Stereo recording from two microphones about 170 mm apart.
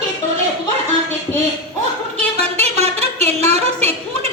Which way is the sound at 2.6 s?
40° right (ahead or behind).